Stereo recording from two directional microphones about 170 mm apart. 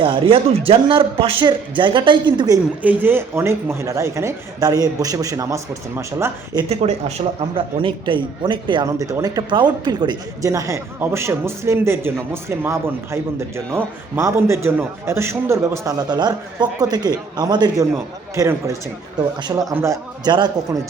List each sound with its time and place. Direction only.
0.0 s a man's voice: 30° right (ahead or behind)
2.8 s a man's voice: 10° right (ahead or behind)
7.2 s a man's voice: 35° right (ahead or behind)